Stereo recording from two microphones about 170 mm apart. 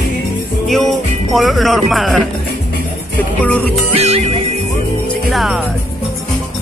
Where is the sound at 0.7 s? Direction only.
Centre (ahead or behind).